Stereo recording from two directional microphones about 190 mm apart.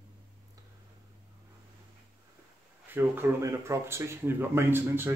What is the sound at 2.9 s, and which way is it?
Speech, 10° right (ahead or behind).